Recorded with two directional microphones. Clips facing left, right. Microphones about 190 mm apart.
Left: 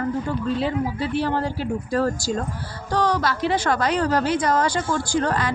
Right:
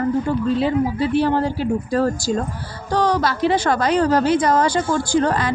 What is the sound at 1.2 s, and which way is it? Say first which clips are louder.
Speech: right 5 dB; 20° right (ahead or behind).